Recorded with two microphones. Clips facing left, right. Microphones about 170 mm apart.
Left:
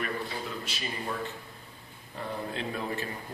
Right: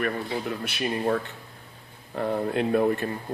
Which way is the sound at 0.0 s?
65° right (ahead or behind).